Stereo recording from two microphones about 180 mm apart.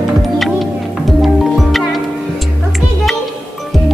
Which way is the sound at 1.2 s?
Centre (ahead or behind).